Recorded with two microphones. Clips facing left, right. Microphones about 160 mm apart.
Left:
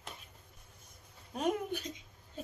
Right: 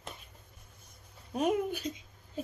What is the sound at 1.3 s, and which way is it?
Speech, 10° right (ahead or behind).